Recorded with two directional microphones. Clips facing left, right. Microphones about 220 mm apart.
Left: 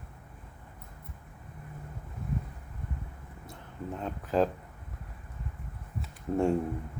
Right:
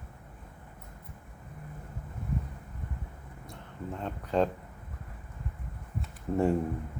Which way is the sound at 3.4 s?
Centre (ahead or behind).